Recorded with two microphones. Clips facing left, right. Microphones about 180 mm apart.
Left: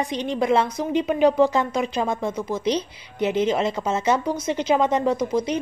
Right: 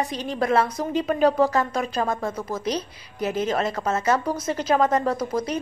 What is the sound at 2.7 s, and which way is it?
A woman's voice, 25° left (ahead or behind).